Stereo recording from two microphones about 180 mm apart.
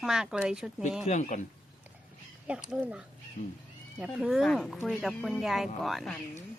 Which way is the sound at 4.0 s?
5° right (ahead or behind).